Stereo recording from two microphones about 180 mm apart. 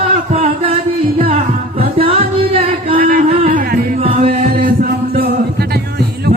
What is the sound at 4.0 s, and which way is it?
Music, 30° right (ahead or behind).